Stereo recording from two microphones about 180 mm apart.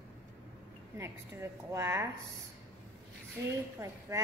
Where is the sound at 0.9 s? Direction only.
15° right (ahead or behind).